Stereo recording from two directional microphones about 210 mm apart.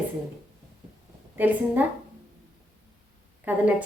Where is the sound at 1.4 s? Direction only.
10° right (ahead or behind).